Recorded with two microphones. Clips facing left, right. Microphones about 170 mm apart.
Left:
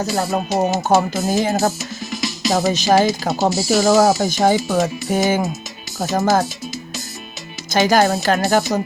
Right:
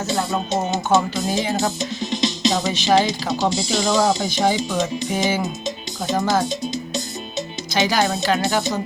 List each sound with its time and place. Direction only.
0.9 s speech: 45° left (ahead or behind)
1.8 s music: 25° right (ahead or behind)
2.5 s speech: 45° left (ahead or behind)
7.7 s speech: 45° left (ahead or behind)